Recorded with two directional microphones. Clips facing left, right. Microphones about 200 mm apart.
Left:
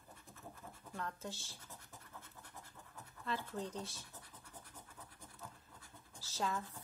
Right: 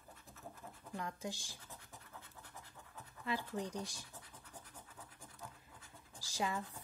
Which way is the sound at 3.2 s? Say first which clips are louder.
Right 2 dB; 10° right (ahead or behind).